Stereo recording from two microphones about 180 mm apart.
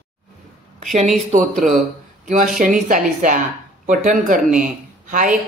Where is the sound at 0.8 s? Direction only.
45° right (ahead or behind).